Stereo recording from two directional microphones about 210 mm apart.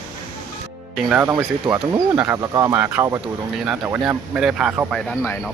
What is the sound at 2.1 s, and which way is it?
Speech, 15° right (ahead or behind).